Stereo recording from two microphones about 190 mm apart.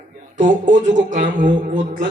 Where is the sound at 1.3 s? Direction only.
45° right (ahead or behind).